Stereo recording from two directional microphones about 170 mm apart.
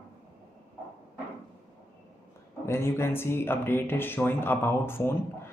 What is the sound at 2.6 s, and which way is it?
Speech, 15° left (ahead or behind).